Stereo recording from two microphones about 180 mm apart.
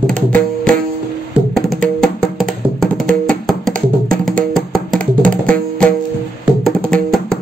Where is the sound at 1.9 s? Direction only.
Centre (ahead or behind).